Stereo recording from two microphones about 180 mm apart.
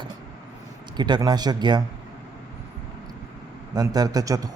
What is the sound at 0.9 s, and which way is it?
Speech, 25° right (ahead or behind).